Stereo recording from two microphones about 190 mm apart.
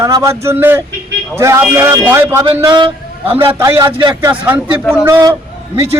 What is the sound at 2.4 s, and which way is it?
A man's voice, 25° right (ahead or behind).